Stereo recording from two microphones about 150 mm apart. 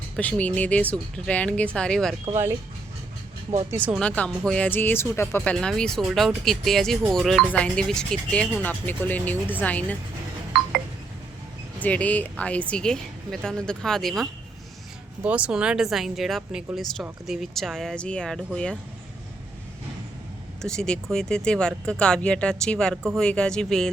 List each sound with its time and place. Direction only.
0.2 s speech: 10° left (ahead or behind)
2.3 s speech: 15° right (ahead or behind)
3.7 s speech: 15° right (ahead or behind)
3.9 s speech: 10° left (ahead or behind)
5.5 s speech: 5° left (ahead or behind)
11.8 s speech: 10° left (ahead or behind)
15.2 s speech: 10° right (ahead or behind)
20.6 s speech: 5° left (ahead or behind)